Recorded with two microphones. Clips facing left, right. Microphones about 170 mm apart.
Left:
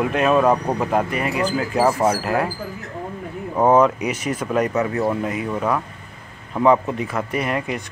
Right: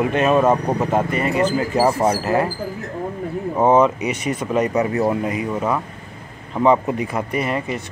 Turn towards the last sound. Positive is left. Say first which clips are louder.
# right 1 dB
turn(degrees=0)  # may be behind; listen again after turning